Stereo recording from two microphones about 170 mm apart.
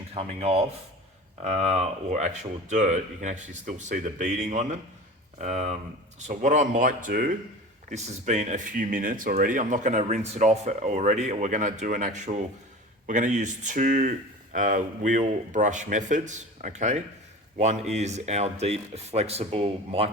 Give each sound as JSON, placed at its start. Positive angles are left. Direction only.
{"t": 0.1, "sound": "speech", "side_deg": -35}
{"t": 7.9, "sound": "speech", "side_deg": -45}